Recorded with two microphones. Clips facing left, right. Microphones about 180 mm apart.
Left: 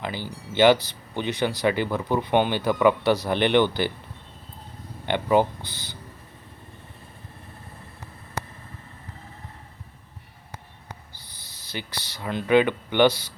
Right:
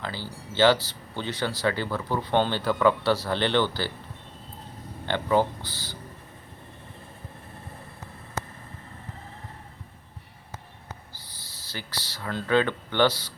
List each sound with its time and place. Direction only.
0.0 s speech: 15° left (ahead or behind)
5.0 s speech: 15° left (ahead or behind)
11.2 s speech: 20° left (ahead or behind)